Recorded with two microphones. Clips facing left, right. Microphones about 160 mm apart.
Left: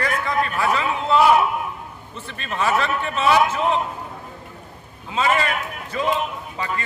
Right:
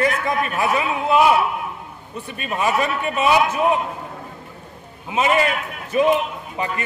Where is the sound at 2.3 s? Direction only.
15° right (ahead or behind).